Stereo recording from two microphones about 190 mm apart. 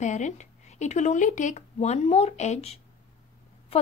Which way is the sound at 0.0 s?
40° left (ahead or behind).